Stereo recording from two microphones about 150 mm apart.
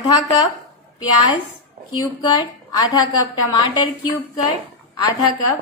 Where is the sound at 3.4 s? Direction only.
30° left (ahead or behind).